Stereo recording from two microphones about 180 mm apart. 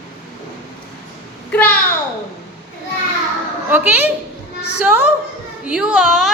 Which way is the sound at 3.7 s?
10° right (ahead or behind).